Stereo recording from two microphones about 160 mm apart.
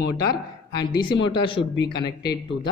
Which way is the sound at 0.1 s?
25° left (ahead or behind).